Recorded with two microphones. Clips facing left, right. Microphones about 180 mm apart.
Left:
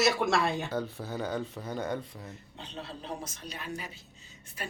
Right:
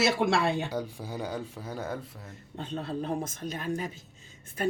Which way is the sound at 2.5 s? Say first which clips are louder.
Right 10 dB; 50° right (ahead or behind).